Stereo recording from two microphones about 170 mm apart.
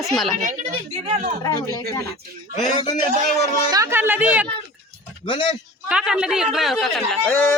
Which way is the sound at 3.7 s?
20° right (ahead or behind).